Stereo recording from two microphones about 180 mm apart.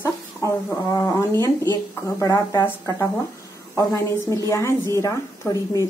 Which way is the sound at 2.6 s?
10° left (ahead or behind).